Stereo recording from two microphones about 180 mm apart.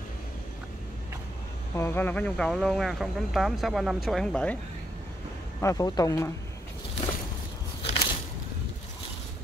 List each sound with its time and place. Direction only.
1.8 s speech: 10° left (ahead or behind)
5.6 s speech: 20° left (ahead or behind)
7.8 s a sound: 30° left (ahead or behind)